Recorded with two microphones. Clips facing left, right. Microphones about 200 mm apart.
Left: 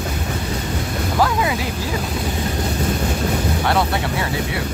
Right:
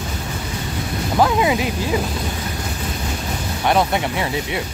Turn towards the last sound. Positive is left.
turn(degrees=-20)  # may be behind; listen again after turning